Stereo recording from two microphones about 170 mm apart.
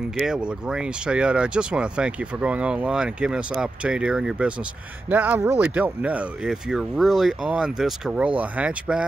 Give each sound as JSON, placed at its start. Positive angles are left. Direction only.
{"t": 0.2, "sound": "speech", "side_deg": -5}